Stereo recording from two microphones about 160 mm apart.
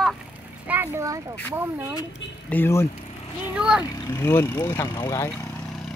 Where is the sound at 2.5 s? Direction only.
15° left (ahead or behind).